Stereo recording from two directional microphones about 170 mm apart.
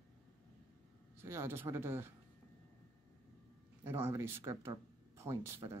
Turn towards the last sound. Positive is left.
turn(degrees=-15)  # may be behind; listen again after turning